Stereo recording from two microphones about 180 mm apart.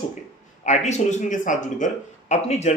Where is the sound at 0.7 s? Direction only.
40° left (ahead or behind).